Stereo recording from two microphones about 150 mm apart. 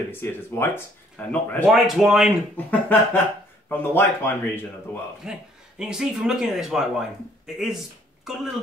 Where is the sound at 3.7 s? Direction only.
15° left (ahead or behind).